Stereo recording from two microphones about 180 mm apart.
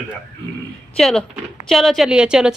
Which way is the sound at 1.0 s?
5° left (ahead or behind).